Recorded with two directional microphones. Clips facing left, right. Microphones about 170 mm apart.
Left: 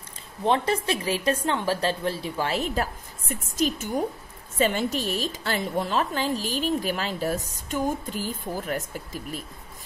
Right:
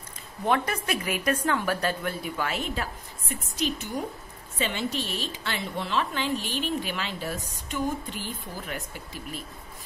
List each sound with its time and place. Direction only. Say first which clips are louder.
0.5 s a woman's voice: left 3 dB; 30° left (ahead or behind); by 9.4 s 45° left (ahead or behind)